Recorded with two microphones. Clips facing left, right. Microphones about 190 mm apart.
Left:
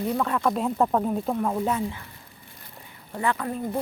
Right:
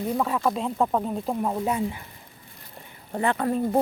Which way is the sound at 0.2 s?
10° right (ahead or behind).